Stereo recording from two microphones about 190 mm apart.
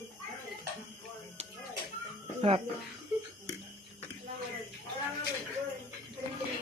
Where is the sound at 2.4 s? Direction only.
30° right (ahead or behind).